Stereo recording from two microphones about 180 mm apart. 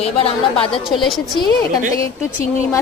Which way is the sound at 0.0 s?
35° left (ahead or behind).